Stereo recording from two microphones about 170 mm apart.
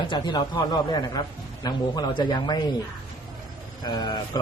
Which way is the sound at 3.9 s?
25° left (ahead or behind).